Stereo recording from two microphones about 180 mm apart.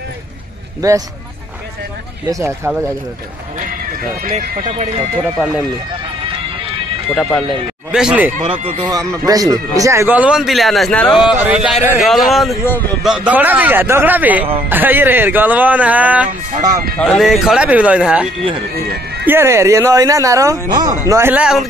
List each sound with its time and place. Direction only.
0.7 s speech: 20° right (ahead or behind)
2.2 s speech: 15° right (ahead or behind)
4.3 s speech: 30° right (ahead or behind)
7.2 s speech: 5° left (ahead or behind)
8.4 s speech: 25° right (ahead or behind); by 16.3 s 10° right (ahead or behind)
17.0 s speech: 5° left (ahead or behind)